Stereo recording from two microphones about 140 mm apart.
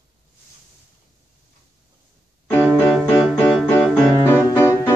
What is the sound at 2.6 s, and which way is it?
Music, 5° right (ahead or behind).